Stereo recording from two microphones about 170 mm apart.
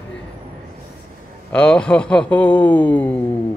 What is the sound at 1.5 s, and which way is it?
Speech, 5° left (ahead or behind).